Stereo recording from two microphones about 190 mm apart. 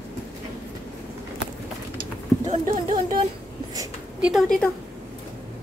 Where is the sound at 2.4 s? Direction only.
40° right (ahead or behind).